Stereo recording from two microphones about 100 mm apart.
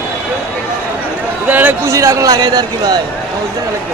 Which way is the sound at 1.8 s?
30° right (ahead or behind).